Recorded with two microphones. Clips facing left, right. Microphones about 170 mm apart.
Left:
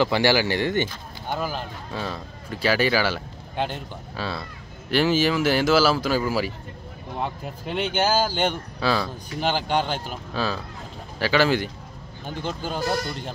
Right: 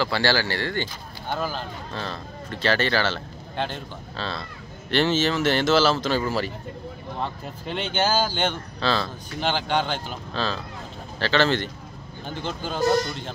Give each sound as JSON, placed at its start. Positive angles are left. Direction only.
{"t": 0.0, "sound": "speech", "side_deg": 15}